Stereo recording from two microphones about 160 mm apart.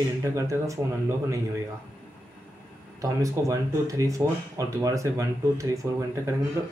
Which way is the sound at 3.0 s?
20° right (ahead or behind).